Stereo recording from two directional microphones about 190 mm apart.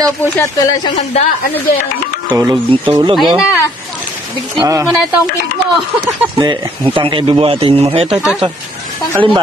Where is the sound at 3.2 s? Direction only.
Centre (ahead or behind).